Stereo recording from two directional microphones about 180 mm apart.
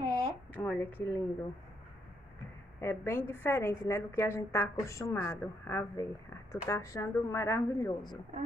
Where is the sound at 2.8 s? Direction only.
15° left (ahead or behind).